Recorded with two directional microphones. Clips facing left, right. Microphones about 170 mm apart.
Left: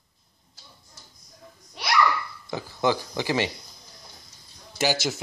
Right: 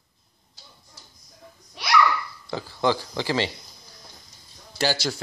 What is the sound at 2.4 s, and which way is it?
Speech, 15° left (ahead or behind).